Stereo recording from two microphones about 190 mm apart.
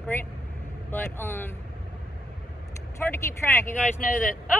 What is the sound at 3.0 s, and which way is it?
Speech, 10° left (ahead or behind).